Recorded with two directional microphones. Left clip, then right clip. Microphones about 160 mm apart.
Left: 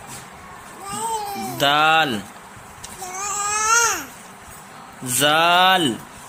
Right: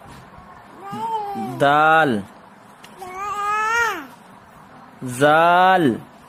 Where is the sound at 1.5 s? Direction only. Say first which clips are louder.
Right 2 dB; 45° right (ahead or behind).